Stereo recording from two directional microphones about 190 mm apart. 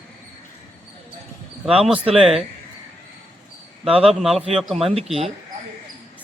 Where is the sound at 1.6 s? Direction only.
5° right (ahead or behind).